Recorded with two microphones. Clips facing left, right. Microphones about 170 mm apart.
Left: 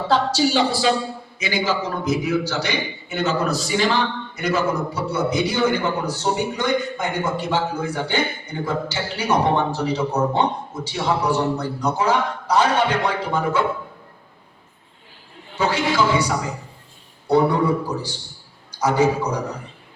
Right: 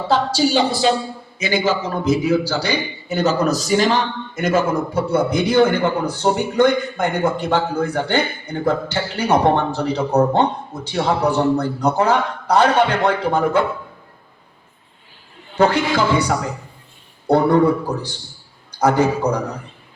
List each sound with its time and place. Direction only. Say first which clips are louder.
0.5 s a man's voice: right 2 dB; 20° right (ahead or behind); by 13.6 s 60° right (ahead or behind)
15.5 s a man's voice: right 4 dB; 60° right (ahead or behind)